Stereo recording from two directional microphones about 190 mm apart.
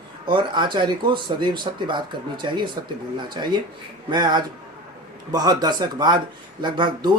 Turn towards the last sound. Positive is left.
turn(degrees=-25)  # may be behind; listen again after turning